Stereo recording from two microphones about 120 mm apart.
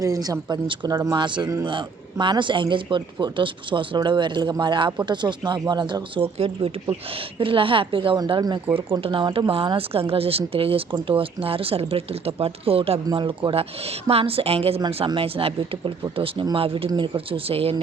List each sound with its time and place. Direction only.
0.0 s speech: 30° right (ahead or behind)
7.3 s a woman's voice: 45° right (ahead or behind)